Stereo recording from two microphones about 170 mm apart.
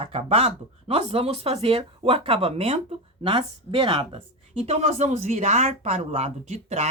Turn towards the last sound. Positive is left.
turn(degrees=-40)  # may be behind; listen again after turning